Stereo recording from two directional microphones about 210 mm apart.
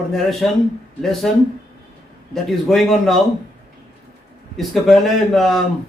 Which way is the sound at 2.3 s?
Centre (ahead or behind).